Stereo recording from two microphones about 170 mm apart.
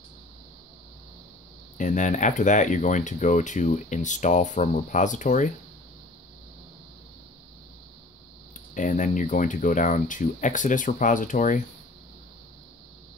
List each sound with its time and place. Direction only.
1.8 s speech: 45° left (ahead or behind)
8.7 s speech: 50° left (ahead or behind)